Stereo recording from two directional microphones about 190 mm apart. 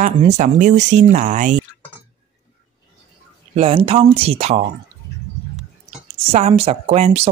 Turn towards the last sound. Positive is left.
turn(degrees=-35)  # may be behind; listen again after turning